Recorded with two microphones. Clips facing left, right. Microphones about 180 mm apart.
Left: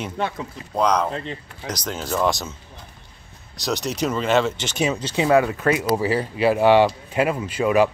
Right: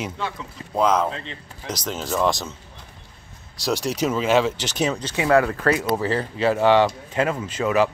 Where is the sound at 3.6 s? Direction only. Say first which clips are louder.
Right 1 dB; 5° right (ahead or behind).